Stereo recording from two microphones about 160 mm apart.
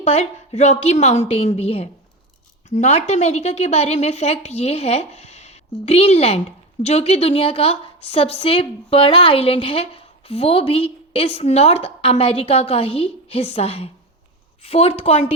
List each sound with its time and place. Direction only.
0.0 s a woman's voice: 45° left (ahead or behind)